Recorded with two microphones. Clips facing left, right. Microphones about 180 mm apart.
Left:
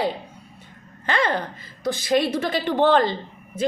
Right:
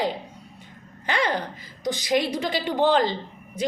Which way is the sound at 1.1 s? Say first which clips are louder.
Left 2 dB; 15° right (ahead or behind).